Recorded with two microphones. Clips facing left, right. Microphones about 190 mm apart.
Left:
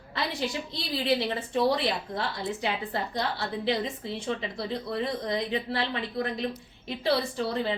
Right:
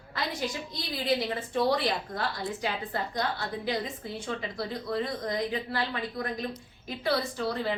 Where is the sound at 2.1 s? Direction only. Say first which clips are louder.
Left 1 dB; 25° left (ahead or behind).